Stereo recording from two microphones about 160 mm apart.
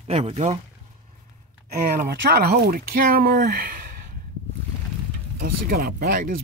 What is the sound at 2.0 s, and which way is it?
Speech, 75° right (ahead or behind).